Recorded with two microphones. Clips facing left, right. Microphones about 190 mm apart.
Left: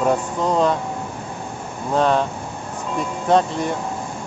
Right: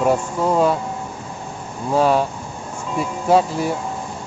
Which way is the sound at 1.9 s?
5° right (ahead or behind).